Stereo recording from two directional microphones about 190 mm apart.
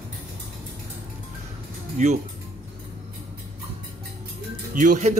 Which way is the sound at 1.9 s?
35° right (ahead or behind).